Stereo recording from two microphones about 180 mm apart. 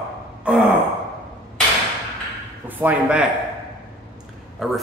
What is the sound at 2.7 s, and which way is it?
Speech, 10° right (ahead or behind).